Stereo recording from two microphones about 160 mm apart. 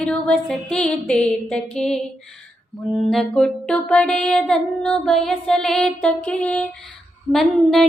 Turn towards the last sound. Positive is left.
turn(degrees=5)  # may be behind; listen again after turning